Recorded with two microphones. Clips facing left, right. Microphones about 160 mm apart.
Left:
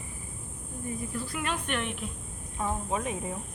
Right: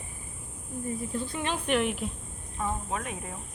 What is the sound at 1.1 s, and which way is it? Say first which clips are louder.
Speech: right 1 dB; 25° right (ahead or behind).